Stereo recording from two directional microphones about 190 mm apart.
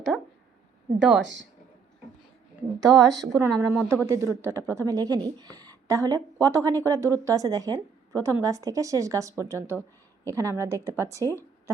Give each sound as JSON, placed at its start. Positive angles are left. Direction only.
{"t": 1.2, "sound": "speech", "side_deg": -75}
{"t": 2.8, "sound": "speech", "side_deg": -20}